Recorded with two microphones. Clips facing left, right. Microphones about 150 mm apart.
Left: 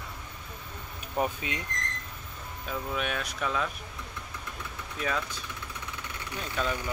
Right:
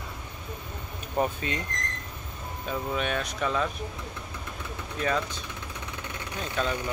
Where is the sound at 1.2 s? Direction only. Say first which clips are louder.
Right 3 dB; 5° left (ahead or behind).